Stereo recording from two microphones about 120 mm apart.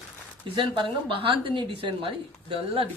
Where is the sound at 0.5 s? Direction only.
45° right (ahead or behind).